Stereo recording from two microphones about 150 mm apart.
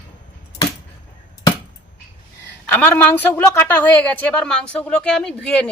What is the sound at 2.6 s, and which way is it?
Speech, 10° left (ahead or behind).